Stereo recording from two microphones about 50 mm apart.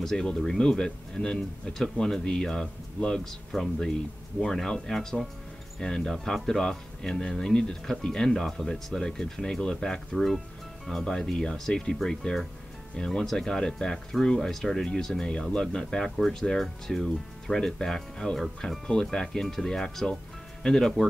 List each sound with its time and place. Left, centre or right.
0.0 s speech: centre
10.1 s speech: centre
10.9 s speech: centre